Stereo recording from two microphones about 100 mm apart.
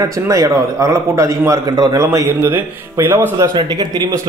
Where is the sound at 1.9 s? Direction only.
30° right (ahead or behind).